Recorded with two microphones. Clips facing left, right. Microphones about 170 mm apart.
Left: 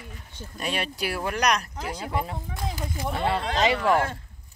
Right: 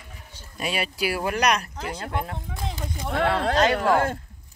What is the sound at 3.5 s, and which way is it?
Speech, centre (ahead or behind).